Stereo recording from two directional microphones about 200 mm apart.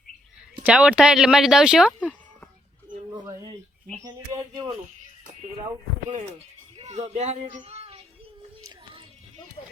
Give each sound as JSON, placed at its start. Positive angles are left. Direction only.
{"t": 0.6, "sound": "speech", "side_deg": -5}
{"t": 4.5, "sound": "a child's voice", "side_deg": -20}
{"t": 6.7, "sound": "speech", "side_deg": -35}
{"t": 8.6, "sound": "child singing", "side_deg": -25}